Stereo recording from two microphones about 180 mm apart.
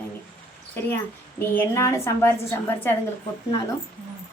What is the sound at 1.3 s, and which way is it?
A woman's voice, 15° left (ahead or behind).